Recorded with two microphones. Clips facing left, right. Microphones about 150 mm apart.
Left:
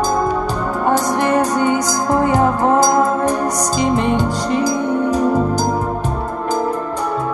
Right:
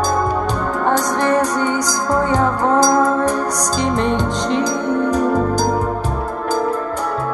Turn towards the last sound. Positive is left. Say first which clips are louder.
# even
turn(degrees=10)  # may be behind; listen again after turning